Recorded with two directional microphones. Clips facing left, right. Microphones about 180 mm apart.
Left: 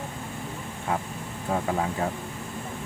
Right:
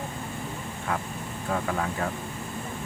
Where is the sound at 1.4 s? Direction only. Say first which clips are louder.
Left 2 dB; 25° left (ahead or behind).